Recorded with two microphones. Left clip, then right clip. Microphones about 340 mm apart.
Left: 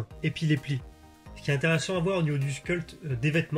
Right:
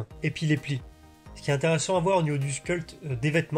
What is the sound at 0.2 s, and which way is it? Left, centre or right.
Speech, centre.